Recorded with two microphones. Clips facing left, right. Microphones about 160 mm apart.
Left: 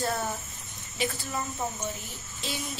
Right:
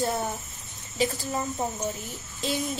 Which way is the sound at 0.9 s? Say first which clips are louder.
Right 4 dB; 35° right (ahead or behind).